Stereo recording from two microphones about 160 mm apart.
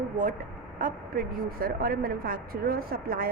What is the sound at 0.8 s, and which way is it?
A woman's voice, 65° right (ahead or behind).